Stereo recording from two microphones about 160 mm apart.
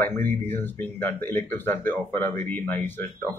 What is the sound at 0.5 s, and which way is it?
A man's voice, 15° left (ahead or behind).